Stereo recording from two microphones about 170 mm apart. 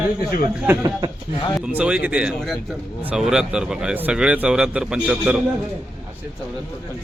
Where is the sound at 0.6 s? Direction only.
20° right (ahead or behind).